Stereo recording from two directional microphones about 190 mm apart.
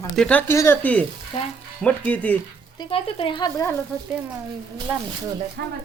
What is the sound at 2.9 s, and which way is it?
Speech, 25° left (ahead or behind).